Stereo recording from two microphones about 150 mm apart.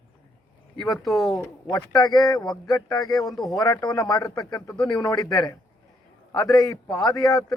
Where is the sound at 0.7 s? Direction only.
25° left (ahead or behind).